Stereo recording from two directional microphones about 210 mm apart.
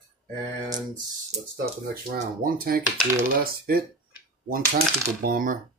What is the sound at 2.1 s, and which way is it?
Speech, 45° right (ahead or behind).